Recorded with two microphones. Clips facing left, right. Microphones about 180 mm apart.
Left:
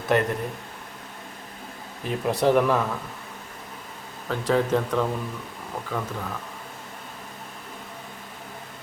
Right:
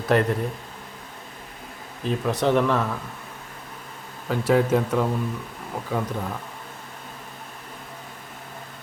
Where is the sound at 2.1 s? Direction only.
10° left (ahead or behind).